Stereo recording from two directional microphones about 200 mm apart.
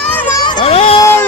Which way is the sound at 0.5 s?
30° left (ahead or behind).